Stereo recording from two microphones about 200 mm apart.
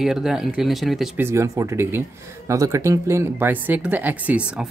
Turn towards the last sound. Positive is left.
turn(degrees=-5)  # may be behind; listen again after turning